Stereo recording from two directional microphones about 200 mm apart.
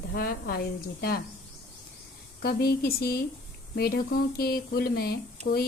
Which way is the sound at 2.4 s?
50° left (ahead or behind).